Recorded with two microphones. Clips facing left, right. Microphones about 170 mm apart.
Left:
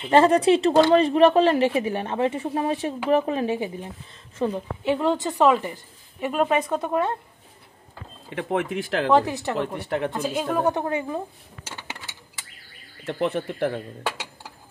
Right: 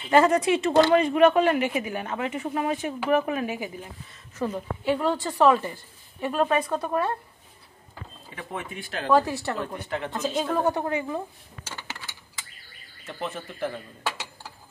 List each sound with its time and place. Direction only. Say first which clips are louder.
0.1 s a woman's voice: left 3 dB; 30° left (ahead or behind)
8.3 s speech: left 10 dB; 75° left (ahead or behind); by 9.1 s 90° left
9.1 s a woman's voice: even; 20° left (ahead or behind)
9.8 s speech: left 5 dB; 55° left (ahead or behind)
10.1 s a woman's voice: left 1 dB; 10° left (ahead or behind)
13.0 s speech: left 9 dB; 65° left (ahead or behind)